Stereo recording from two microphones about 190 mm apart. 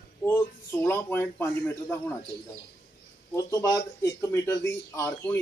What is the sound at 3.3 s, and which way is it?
Speech, 15° left (ahead or behind).